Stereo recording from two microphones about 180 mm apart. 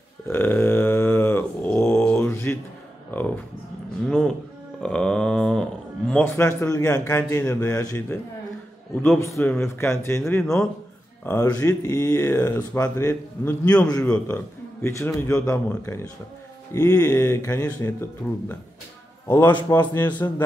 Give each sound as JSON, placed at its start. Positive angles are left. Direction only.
{"t": 0.3, "sound": "a sound", "side_deg": 10}
{"t": 4.1, "sound": "speech", "side_deg": 5}
{"t": 8.9, "sound": "a man's voice", "side_deg": 5}
{"t": 9.2, "sound": "a man's voice", "side_deg": 15}
{"t": 11.2, "sound": "a man's voice", "side_deg": 15}
{"t": 19.2, "sound": "a man's voice", "side_deg": 10}